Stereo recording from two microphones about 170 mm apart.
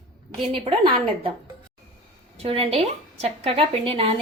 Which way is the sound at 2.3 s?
35° right (ahead or behind).